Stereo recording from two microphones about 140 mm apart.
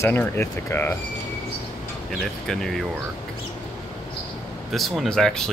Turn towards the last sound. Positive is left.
turn(degrees=5)  # may be behind; listen again after turning